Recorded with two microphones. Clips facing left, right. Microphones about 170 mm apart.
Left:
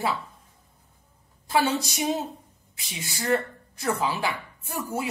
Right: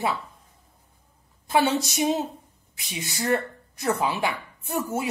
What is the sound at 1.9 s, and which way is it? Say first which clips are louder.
Speech: right 3 dB; 20° right (ahead or behind).